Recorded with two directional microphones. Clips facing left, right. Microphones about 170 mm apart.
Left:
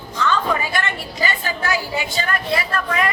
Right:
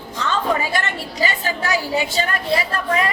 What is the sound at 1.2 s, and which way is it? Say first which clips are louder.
A woman's voice: right 1 dB; 30° right (ahead or behind).